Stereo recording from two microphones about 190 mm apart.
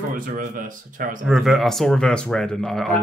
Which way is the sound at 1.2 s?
Centre (ahead or behind).